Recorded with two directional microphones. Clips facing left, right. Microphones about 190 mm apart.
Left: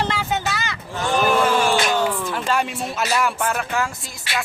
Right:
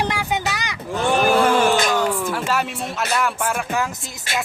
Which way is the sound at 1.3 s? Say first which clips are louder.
Right 2 dB; 40° right (ahead or behind).